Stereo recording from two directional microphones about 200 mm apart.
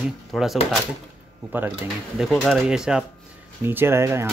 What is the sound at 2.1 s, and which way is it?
Speech, centre (ahead or behind).